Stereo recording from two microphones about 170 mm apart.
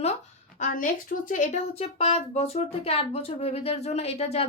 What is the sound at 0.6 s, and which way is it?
Speech, 50° left (ahead or behind).